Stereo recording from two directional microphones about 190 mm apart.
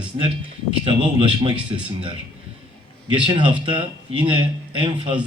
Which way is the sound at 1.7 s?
25° right (ahead or behind).